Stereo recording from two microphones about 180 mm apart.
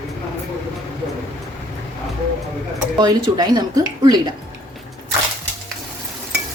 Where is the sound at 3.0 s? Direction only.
25° right (ahead or behind).